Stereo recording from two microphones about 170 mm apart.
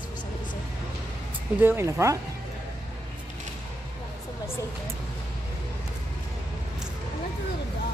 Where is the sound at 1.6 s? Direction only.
15° right (ahead or behind).